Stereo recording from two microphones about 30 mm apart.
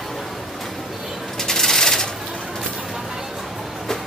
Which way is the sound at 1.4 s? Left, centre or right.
Centre.